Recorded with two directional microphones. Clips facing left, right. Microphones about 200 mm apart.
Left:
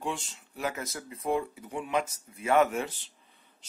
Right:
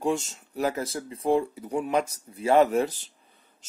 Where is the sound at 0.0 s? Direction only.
45° right (ahead or behind).